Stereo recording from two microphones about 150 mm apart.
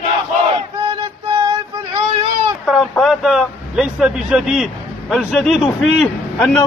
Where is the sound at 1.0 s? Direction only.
35° right (ahead or behind).